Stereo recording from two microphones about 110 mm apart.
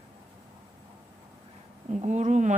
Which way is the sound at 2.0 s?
90° right.